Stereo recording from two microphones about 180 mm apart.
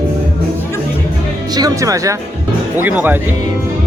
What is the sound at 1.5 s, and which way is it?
Speech, 20° right (ahead or behind).